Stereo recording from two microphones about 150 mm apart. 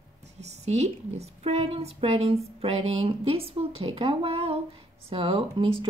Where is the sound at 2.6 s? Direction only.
40° right (ahead or behind).